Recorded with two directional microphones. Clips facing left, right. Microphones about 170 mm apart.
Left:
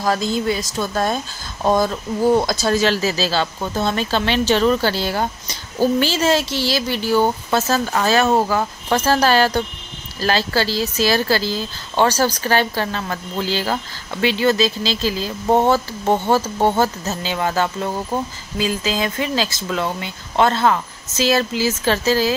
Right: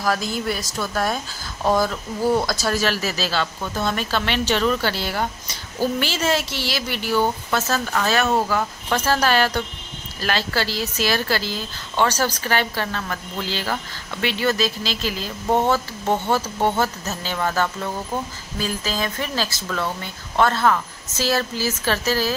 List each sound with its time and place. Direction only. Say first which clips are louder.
0.0 s a woman's voice: left 4 dB; 25° left (ahead or behind)
17.3 s a woman's voice: left 2 dB; 20° left (ahead or behind)